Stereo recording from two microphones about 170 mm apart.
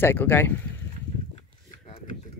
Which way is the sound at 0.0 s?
15° left (ahead or behind).